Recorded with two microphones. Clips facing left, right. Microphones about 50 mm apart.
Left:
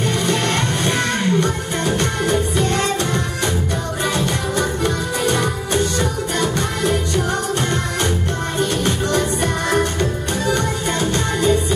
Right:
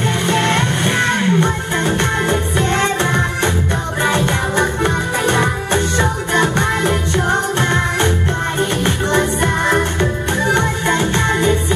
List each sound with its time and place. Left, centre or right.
0.3 s music: right